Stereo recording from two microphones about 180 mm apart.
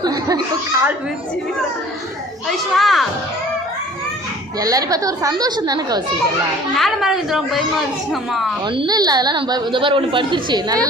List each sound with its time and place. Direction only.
0.0 s chuckle: 20° right (ahead or behind)
2.5 s a woman's voice: centre (ahead or behind)
4.6 s a woman's voice: 20° right (ahead or behind)
6.7 s a woman's voice: centre (ahead or behind)
8.6 s a woman's voice: 25° right (ahead or behind)